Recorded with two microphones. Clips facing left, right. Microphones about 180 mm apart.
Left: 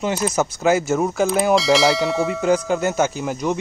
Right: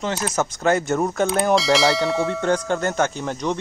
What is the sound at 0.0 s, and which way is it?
Speech, 10° left (ahead or behind).